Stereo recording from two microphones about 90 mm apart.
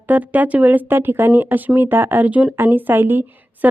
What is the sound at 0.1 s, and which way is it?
Speech, 20° right (ahead or behind).